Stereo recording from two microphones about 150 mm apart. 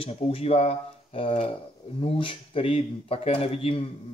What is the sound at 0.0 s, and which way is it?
Speech, 40° left (ahead or behind).